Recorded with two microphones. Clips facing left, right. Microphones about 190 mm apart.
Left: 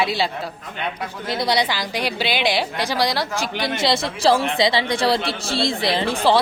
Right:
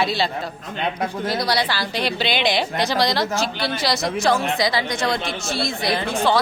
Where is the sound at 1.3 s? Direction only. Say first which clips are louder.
Left 3 dB; 20° left (ahead or behind).